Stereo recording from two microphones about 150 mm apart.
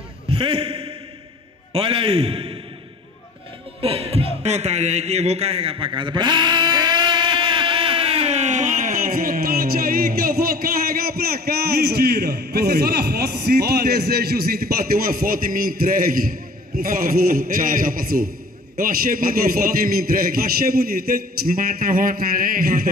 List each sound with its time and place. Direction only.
0.3 s a man's voice: 40° right (ahead or behind)
3.8 s a man's voice: 40° right (ahead or behind)
5.9 s a sound: 30° right (ahead or behind); by 18.3 s 75° right (ahead or behind)
18.8 s a man's voice: 70° right (ahead or behind)